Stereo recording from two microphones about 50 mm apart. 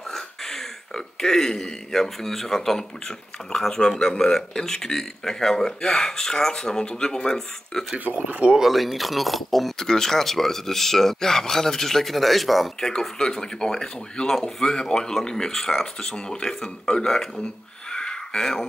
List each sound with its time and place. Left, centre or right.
0.1 s speech: centre
8.3 s speech: right
8.5 s speech: centre
13.2 s speech: centre
17.9 s a sound: centre